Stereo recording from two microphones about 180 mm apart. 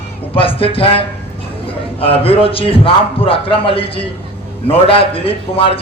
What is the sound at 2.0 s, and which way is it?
A man's voice, 30° left (ahead or behind).